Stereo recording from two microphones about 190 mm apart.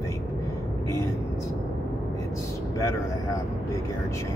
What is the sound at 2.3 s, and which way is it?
Speech, 15° left (ahead or behind).